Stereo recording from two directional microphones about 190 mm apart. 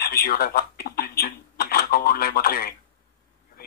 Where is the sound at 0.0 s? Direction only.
55° left (ahead or behind).